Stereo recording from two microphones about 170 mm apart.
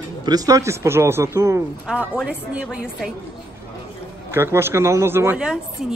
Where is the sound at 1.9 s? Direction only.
5° right (ahead or behind).